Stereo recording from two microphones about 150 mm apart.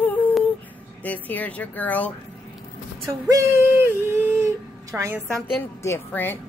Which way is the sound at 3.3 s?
20° right (ahead or behind).